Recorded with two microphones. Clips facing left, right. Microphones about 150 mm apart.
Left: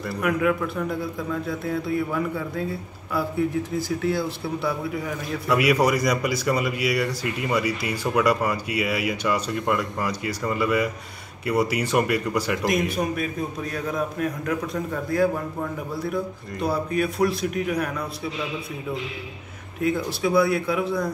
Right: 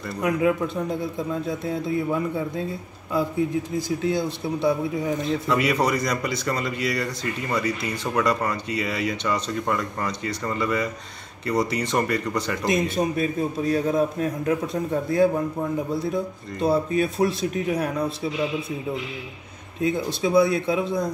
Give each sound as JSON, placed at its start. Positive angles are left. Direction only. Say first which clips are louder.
{"t": 0.2, "sound": "a man's voice", "louder": "right 1 dB", "side_deg": -25}
{"t": 5.5, "sound": "speech", "louder": "left 3 dB", "side_deg": 10}
{"t": 12.6, "sound": "a man's voice", "louder": "right 4 dB", "side_deg": -25}
{"t": 16.6, "sound": "a man's voice", "louder": "right 3 dB", "side_deg": -25}
{"t": 19.8, "sound": "a man's voice", "louder": "even", "side_deg": -20}